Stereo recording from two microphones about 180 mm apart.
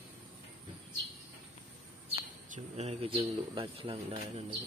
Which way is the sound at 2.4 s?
40° right (ahead or behind).